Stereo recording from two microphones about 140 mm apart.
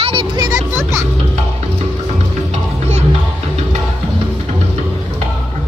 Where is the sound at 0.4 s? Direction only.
20° right (ahead or behind).